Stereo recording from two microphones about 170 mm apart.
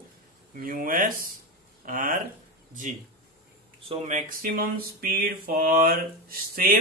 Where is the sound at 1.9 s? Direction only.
50° right (ahead or behind).